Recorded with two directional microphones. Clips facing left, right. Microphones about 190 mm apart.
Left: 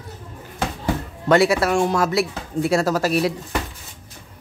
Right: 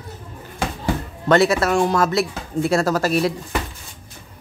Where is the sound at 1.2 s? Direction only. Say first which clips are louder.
Even; 10° left (ahead or behind).